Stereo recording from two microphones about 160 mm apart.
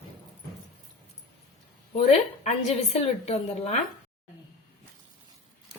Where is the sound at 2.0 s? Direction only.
45° left (ahead or behind).